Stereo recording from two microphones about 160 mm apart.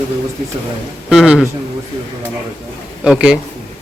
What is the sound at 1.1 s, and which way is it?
Speech, 5° right (ahead or behind).